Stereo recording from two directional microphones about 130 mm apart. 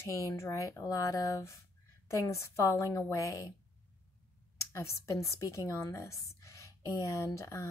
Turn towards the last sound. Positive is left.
turn(degrees=20)  # may be behind; listen again after turning